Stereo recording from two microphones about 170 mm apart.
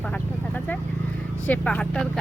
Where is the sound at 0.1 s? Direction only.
10° left (ahead or behind).